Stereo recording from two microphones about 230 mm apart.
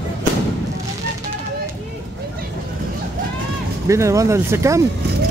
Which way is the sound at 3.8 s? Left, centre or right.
Centre.